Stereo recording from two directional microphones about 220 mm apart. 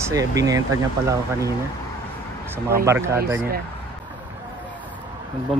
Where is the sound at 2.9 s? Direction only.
10° right (ahead or behind).